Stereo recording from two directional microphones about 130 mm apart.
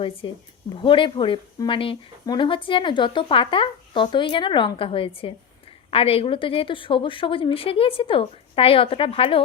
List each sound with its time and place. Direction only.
0.2 s a woman's voice: 40° left (ahead or behind)